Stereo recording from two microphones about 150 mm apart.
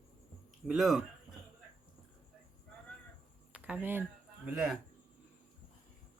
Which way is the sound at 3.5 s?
10° right (ahead or behind).